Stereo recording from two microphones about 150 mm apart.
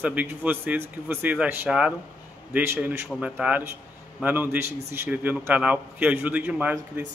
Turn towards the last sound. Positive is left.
turn(degrees=-10)  # may be behind; listen again after turning